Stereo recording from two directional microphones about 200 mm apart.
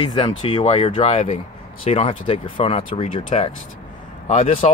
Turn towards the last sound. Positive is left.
turn(degrees=35)  # may be behind; listen again after turning